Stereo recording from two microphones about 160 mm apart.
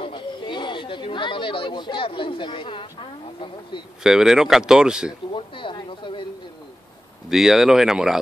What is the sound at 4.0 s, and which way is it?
Speech, 5° right (ahead or behind).